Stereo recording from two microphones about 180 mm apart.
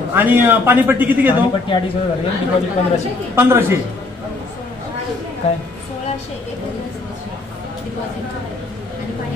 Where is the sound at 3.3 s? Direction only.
15° right (ahead or behind).